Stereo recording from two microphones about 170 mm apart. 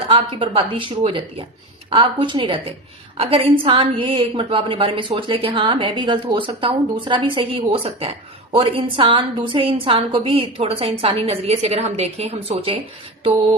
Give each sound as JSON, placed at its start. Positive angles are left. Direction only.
{"t": 0.1, "sound": "a woman's voice", "side_deg": -30}